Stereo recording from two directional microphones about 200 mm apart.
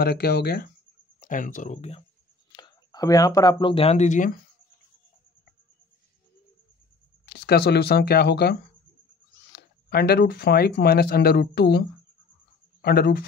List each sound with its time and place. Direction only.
0.0 s speech: 50° left (ahead or behind)
1.2 s speech: 40° left (ahead or behind)
2.5 s speech: 20° left (ahead or behind); by 4.4 s 40° left (ahead or behind)
7.4 s speech: 55° left (ahead or behind)
12.8 s speech: 50° left (ahead or behind)